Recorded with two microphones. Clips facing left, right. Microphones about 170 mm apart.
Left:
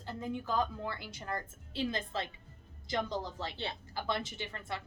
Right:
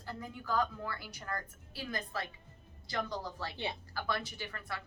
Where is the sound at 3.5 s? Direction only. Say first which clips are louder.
Right 1 dB; 15° right (ahead or behind).